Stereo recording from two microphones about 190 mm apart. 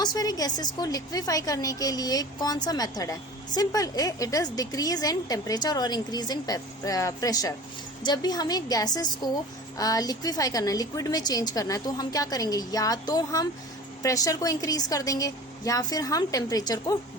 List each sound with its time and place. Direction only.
0.0 s a woman's voice: 20° left (ahead or behind)